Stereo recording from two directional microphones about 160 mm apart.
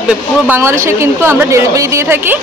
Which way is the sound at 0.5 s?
15° right (ahead or behind).